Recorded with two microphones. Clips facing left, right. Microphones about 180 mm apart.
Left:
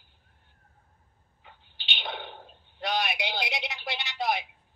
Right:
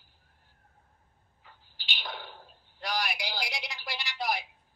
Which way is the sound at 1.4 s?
20° left (ahead or behind).